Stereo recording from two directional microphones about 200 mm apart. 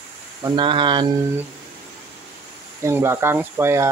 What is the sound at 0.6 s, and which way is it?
Speech, 25° right (ahead or behind).